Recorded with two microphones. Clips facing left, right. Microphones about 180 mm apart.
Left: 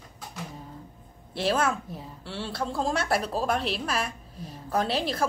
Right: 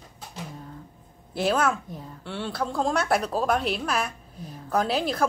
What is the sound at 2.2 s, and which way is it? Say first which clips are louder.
Speech: right 3 dB; 30° left (ahead or behind).